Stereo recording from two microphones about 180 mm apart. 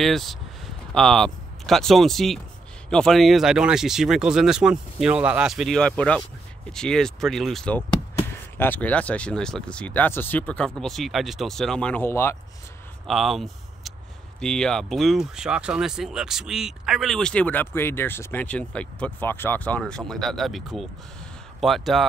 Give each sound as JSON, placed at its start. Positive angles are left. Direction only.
{"t": 0.0, "sound": "speech", "side_deg": 0}
{"t": 13.0, "sound": "a sound", "side_deg": 0}
{"t": 14.4, "sound": "speech", "side_deg": 5}